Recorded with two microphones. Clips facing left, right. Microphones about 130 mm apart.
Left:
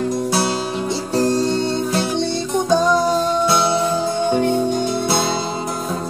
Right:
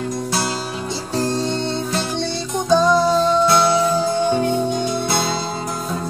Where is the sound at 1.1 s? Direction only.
10° left (ahead or behind).